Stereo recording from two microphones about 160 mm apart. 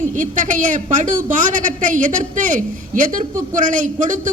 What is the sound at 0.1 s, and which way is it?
A woman's voice, 55° right (ahead or behind).